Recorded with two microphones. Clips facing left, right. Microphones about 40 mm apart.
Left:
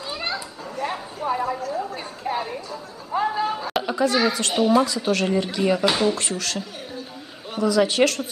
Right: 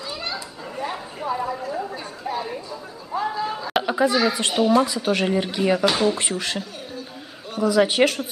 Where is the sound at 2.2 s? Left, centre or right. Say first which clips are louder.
Left 2 dB; left.